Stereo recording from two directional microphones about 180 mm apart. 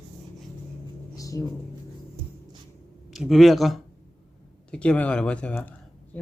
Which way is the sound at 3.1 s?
Centre (ahead or behind).